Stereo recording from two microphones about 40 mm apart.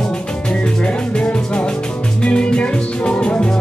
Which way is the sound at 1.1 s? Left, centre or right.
Left.